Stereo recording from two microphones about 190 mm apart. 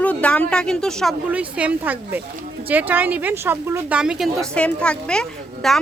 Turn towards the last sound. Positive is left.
turn(degrees=5)  # may be behind; listen again after turning